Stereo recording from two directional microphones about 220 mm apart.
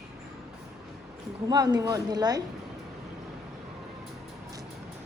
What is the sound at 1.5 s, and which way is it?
Speech, 15° right (ahead or behind).